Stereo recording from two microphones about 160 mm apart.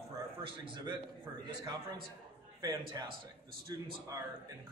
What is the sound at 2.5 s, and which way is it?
Speech, 25° right (ahead or behind).